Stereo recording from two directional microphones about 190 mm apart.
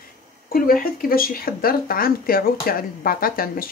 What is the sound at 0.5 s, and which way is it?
Speech, 50° left (ahead or behind).